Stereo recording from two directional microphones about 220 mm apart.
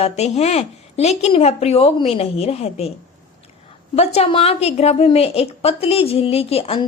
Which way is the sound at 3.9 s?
30° left (ahead or behind).